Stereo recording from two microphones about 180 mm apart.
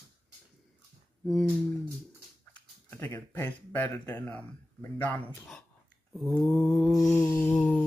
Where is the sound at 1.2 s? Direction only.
Centre (ahead or behind).